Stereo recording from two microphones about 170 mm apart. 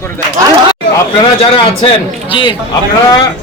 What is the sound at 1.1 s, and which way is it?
A man's voice, 30° left (ahead or behind).